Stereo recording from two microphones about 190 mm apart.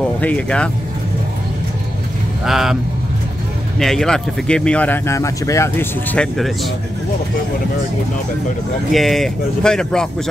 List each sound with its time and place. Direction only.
0.2 s speech: 5° left (ahead or behind)
2.4 s speech: centre (ahead or behind)
3.8 s speech: centre (ahead or behind)
6.3 s speech: centre (ahead or behind)
8.9 s speech: centre (ahead or behind)